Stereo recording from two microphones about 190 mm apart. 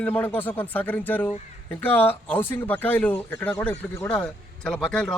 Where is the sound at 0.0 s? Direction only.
10° left (ahead or behind).